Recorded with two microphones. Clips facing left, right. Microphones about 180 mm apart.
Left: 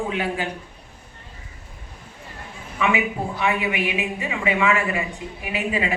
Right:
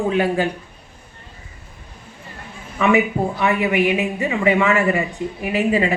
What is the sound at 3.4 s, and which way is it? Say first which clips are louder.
Speech: right 5 dB; 40° right (ahead or behind).